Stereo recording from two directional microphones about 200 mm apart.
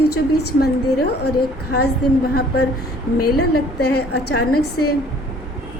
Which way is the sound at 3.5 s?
55° left (ahead or behind).